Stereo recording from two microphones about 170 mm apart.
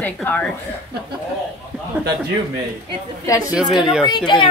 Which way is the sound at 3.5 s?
5° right (ahead or behind).